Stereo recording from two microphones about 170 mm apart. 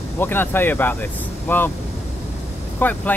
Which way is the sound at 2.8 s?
10° left (ahead or behind).